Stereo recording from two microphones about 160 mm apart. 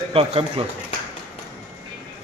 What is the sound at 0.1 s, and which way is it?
Speech, 35° right (ahead or behind).